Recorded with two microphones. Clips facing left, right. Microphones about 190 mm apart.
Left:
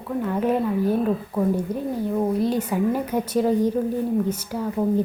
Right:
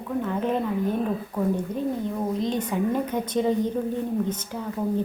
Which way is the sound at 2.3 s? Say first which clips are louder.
Left 3 dB; 10° left (ahead or behind).